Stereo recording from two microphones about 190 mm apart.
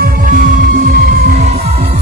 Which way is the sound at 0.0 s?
50° right (ahead or behind).